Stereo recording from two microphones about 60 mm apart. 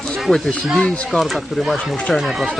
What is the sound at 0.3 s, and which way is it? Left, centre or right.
Speech, centre.